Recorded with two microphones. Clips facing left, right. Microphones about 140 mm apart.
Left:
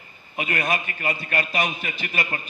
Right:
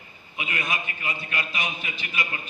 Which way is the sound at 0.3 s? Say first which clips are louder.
Left 5 dB; 55° left (ahead or behind).